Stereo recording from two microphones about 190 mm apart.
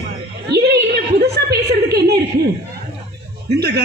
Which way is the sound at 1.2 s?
55° right (ahead or behind).